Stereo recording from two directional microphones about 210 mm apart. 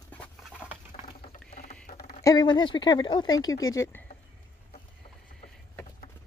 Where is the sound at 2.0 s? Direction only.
20° left (ahead or behind).